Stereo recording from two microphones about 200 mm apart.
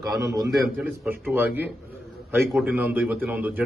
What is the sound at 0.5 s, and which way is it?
A man's voice, 5° right (ahead or behind).